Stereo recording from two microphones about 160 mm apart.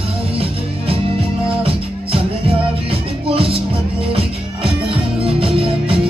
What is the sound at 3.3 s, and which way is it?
Music, 35° right (ahead or behind).